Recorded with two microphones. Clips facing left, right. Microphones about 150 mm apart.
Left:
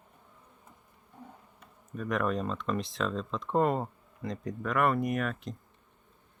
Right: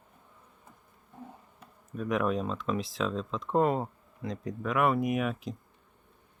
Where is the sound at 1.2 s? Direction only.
5° right (ahead or behind).